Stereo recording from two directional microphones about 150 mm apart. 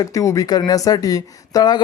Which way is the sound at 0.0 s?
20° left (ahead or behind).